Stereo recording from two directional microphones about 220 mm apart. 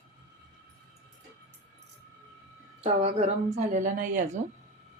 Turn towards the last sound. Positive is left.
turn(degrees=-40)  # may be behind; listen again after turning